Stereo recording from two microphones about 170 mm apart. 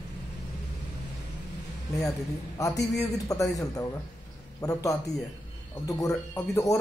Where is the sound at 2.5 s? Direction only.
20° left (ahead or behind).